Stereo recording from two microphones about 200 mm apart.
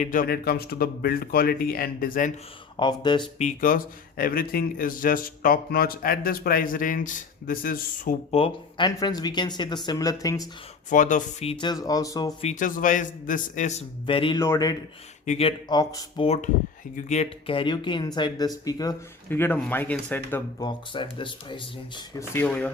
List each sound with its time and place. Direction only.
0.0 s a man's voice: 40° left (ahead or behind)
2.7 s speech: 20° left (ahead or behind)
3.3 s a man's voice: 40° left (ahead or behind)
8.3 s speech: 30° left (ahead or behind)
10.8 s a man's voice: 40° left (ahead or behind)
11.6 s speech: 20° left (ahead or behind)
12.4 s a man's voice: 35° left (ahead or behind); by 14.8 s 15° left (ahead or behind)
15.3 s speech: 30° left (ahead or behind)
16.2 s a man's voice: 30° left (ahead or behind); by 20.4 s 10° left (ahead or behind)
20.6 s speech: 25° left (ahead or behind)
22.4 s speech: 10° left (ahead or behind)